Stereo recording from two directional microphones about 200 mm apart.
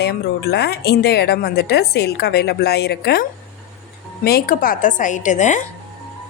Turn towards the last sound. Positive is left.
turn(degrees=35)  # may be behind; listen again after turning